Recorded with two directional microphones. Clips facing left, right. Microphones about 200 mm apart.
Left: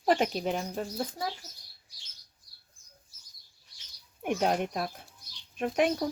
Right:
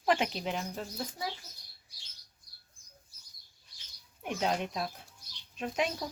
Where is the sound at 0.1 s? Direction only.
40° left (ahead or behind).